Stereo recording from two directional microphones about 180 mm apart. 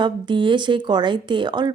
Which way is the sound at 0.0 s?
25° right (ahead or behind).